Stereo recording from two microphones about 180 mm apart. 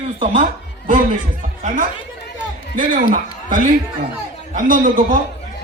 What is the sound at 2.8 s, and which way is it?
A man's voice, 50° right (ahead or behind).